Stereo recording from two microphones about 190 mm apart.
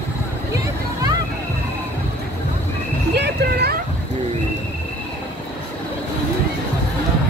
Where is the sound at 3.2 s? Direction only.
60° right (ahead or behind).